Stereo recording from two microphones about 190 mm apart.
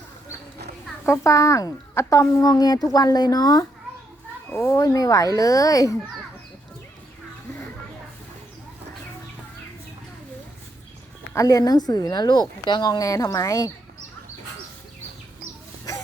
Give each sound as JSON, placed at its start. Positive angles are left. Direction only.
{"t": 1.0, "sound": "a woman's voice", "side_deg": 15}
{"t": 11.3, "sound": "a woman's voice", "side_deg": 20}